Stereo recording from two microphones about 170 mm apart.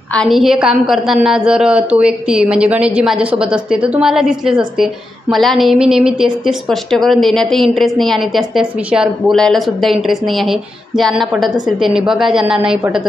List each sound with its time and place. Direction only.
0.1 s a woman's voice: centre (ahead or behind)